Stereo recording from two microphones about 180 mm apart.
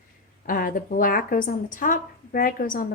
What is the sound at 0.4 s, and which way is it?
A woman's voice, 50° left (ahead or behind).